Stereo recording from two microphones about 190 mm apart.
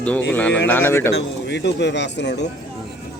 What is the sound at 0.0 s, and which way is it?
A man's voice, 10° left (ahead or behind).